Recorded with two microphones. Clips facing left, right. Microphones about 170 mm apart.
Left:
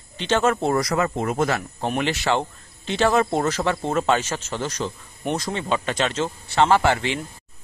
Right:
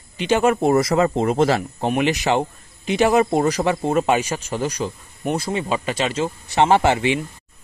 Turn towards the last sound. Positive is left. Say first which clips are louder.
# right 3 dB
turn(degrees=-20)  # may be behind; listen again after turning